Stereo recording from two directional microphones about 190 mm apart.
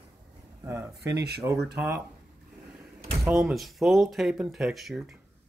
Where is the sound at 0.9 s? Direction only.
60° right (ahead or behind).